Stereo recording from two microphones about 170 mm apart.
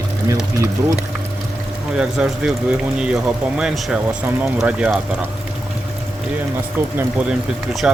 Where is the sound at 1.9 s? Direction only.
5° right (ahead or behind).